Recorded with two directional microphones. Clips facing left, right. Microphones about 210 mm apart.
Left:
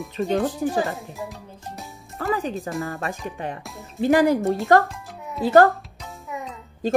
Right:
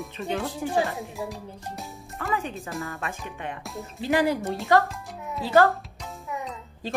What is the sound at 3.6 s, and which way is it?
Speech, centre (ahead or behind).